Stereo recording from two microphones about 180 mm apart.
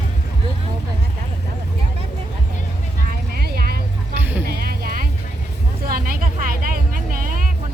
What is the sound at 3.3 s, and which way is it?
Vehicle, 60° right (ahead or behind).